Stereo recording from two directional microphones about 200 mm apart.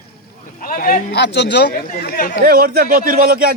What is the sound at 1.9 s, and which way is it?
Speech, 45° left (ahead or behind).